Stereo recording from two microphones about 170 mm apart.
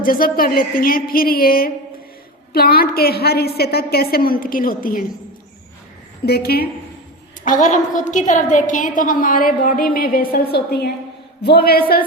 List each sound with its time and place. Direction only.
0.0 s a woman's voice: 55° left (ahead or behind)
6.2 s a woman's voice: 70° left (ahead or behind)
7.4 s a woman's voice: 50° left (ahead or behind)